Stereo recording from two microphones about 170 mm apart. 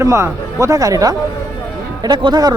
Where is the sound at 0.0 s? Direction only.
15° right (ahead or behind).